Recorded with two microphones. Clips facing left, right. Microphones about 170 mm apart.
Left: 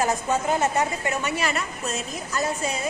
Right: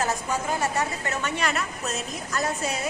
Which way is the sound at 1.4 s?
Centre (ahead or behind).